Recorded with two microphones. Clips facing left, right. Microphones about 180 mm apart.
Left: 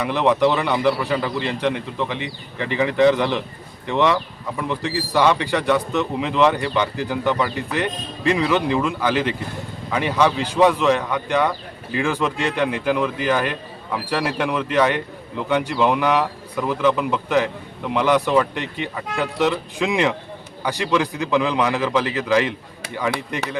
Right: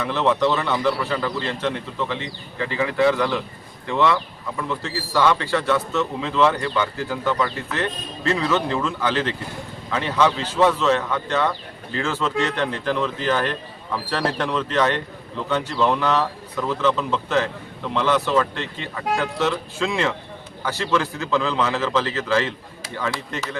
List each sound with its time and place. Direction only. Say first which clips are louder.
0.0 s speech: left 2 dB; 15° left (ahead or behind)